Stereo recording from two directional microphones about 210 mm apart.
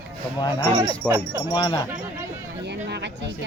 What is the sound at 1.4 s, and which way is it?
Speech, 20° left (ahead or behind).